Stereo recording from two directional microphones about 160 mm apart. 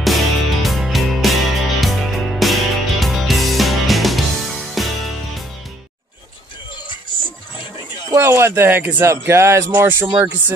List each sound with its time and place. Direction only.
0.0 s music: centre (ahead or behind)
8.1 s speech: 15° right (ahead or behind)